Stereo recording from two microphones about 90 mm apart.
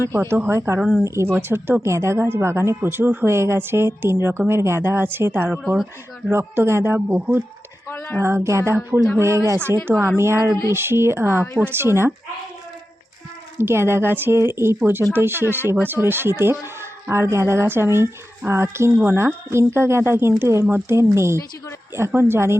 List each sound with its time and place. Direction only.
0.1 s speech: 30° right (ahead or behind)
5.6 s speech: 5° right (ahead or behind)
6.3 s speech: 30° right (ahead or behind)
7.9 s a sound: 25° left (ahead or behind)
8.4 s speech: 30° right (ahead or behind)
13.6 s speech: 30° right (ahead or behind)
20.7 s speech: 20° right (ahead or behind)
20.9 s speech: 30° right (ahead or behind)